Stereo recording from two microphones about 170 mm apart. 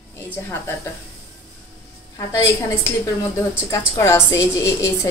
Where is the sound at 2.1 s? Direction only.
15° left (ahead or behind).